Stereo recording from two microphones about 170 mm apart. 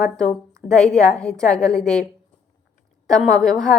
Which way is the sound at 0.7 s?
5° left (ahead or behind).